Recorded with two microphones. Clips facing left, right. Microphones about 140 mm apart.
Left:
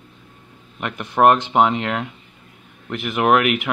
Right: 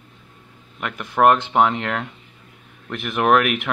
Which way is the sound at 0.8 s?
20° left (ahead or behind).